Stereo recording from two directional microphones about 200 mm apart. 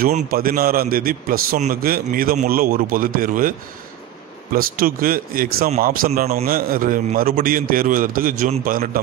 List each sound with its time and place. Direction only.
0.0 s a man's voice: 45° right (ahead or behind)